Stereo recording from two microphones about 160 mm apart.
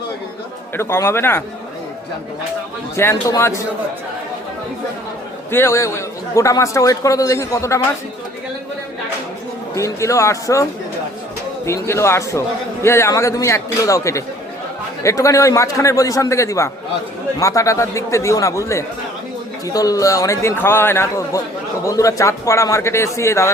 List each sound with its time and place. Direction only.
0.8 s a man's voice: 15° left (ahead or behind)
2.9 s a man's voice: 15° left (ahead or behind)
5.5 s a man's voice: 15° left (ahead or behind)
9.7 s a man's voice: 20° left (ahead or behind)